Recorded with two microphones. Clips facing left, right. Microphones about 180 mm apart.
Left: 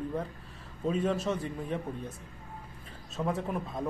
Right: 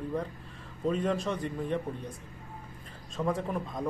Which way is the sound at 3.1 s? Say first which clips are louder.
Right 1 dB; 5° left (ahead or behind).